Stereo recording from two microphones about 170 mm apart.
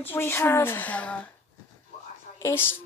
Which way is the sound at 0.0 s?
10° left (ahead or behind).